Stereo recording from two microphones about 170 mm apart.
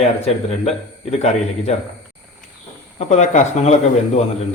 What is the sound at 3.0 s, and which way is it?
Speech, 40° left (ahead or behind).